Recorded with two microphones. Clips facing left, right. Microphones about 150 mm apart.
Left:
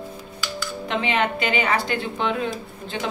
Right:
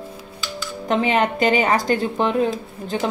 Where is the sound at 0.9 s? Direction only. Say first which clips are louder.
Right 5 dB; 40° right (ahead or behind).